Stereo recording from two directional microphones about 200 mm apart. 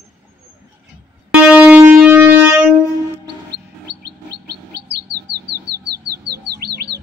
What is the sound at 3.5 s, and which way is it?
Chirp, 55° right (ahead or behind).